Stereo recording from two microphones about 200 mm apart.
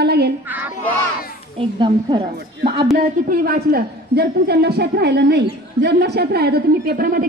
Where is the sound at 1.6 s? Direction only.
25° right (ahead or behind).